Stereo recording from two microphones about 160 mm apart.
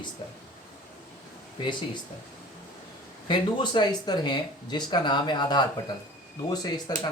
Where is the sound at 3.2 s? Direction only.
30° left (ahead or behind).